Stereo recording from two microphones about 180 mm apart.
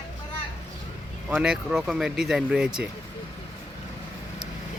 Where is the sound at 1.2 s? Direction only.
5° right (ahead or behind).